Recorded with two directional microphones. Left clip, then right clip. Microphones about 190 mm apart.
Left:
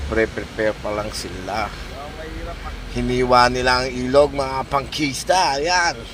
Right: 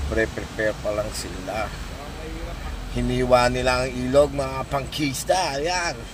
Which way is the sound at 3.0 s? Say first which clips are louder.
Left 4 dB; 5° left (ahead or behind).